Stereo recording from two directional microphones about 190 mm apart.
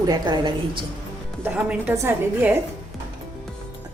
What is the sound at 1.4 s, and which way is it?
A woman's voice, 5° right (ahead or behind).